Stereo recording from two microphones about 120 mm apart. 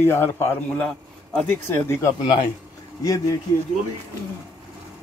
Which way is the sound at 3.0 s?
30° left (ahead or behind).